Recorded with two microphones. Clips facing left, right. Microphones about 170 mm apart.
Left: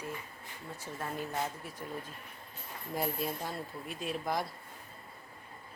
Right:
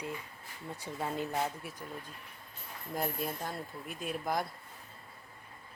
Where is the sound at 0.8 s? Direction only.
15° right (ahead or behind).